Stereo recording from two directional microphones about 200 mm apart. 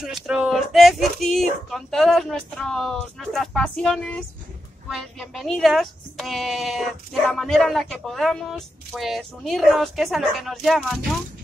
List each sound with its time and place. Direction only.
0.0 s speech: 5° right (ahead or behind)